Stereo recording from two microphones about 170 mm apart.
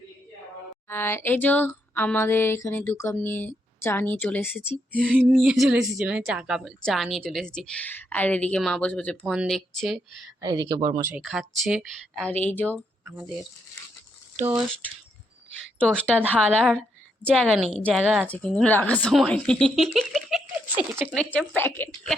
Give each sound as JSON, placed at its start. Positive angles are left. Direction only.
{"t": 0.9, "sound": "speech", "side_deg": 15}
{"t": 5.0, "sound": "a woman's voice", "side_deg": -10}
{"t": 10.4, "sound": "speech", "side_deg": -25}
{"t": 11.1, "sound": "a woman's voice", "side_deg": -5}
{"t": 12.7, "sound": "speech", "side_deg": -15}
{"t": 14.3, "sound": "speech", "side_deg": -15}
{"t": 15.8, "sound": "speech", "side_deg": 5}
{"t": 16.1, "sound": "speech", "side_deg": -10}
{"t": 17.4, "sound": "a woman's voice", "side_deg": 0}
{"t": 18.3, "sound": "a woman's voice", "side_deg": 5}
{"t": 21.2, "sound": "speech", "side_deg": 10}